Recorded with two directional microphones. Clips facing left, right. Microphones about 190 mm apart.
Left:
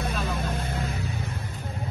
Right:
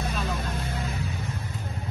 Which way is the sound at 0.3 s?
55° left (ahead or behind).